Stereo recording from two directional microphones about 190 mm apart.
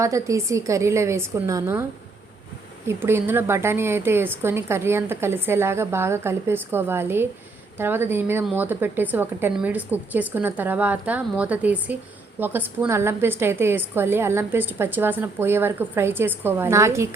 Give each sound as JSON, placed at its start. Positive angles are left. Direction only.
{"t": 0.0, "sound": "a woman's voice", "side_deg": -15}